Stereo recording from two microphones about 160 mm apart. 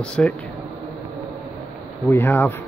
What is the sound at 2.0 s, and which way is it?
Speech, 15° left (ahead or behind).